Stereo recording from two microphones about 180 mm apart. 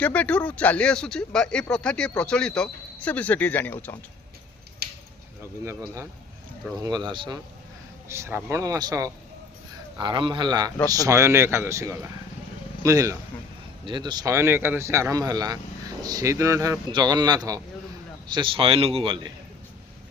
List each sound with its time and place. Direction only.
0.0 s speech: 10° left (ahead or behind)
4.8 s a sound: 60° right (ahead or behind)
6.8 s speech: 25° right (ahead or behind)
8.0 s speech: 15° right (ahead or behind)